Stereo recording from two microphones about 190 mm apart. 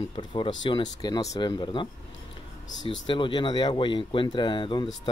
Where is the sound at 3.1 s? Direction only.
25° left (ahead or behind).